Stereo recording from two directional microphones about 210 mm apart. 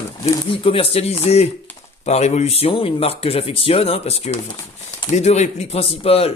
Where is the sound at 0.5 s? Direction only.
25° left (ahead or behind).